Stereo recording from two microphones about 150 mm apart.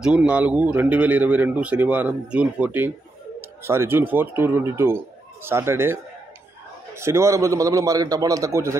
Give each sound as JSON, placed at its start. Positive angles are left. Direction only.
{"t": 0.0, "sound": "speech", "side_deg": -5}
{"t": 3.3, "sound": "bird", "side_deg": -15}
{"t": 4.1, "sound": "speech", "side_deg": -15}
{"t": 7.0, "sound": "a man's voice", "side_deg": -20}